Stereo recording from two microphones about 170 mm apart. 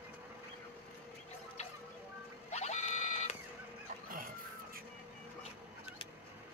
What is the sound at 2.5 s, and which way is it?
Printer, 40° left (ahead or behind).